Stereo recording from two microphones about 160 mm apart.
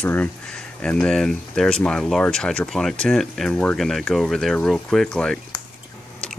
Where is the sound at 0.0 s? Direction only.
10° left (ahead or behind).